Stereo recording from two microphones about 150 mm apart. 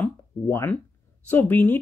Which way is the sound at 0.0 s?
15° left (ahead or behind).